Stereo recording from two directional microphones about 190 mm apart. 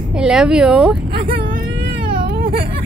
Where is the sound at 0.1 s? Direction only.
5° right (ahead or behind).